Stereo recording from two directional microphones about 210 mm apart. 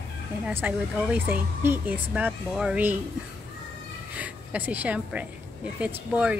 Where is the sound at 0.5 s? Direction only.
10° right (ahead or behind).